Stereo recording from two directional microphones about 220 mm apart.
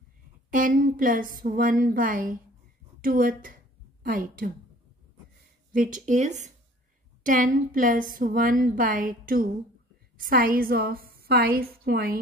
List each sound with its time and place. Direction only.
0.5 s a woman's voice: 40° right (ahead or behind)
5.7 s a woman's voice: 35° right (ahead or behind)